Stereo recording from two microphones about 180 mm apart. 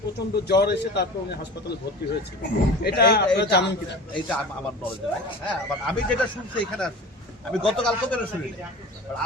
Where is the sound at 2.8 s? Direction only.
60° left (ahead or behind).